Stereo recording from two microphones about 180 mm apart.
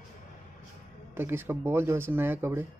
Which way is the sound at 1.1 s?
15° right (ahead or behind).